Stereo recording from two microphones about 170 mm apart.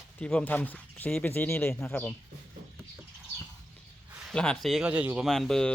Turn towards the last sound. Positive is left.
turn(degrees=5)  # may be behind; listen again after turning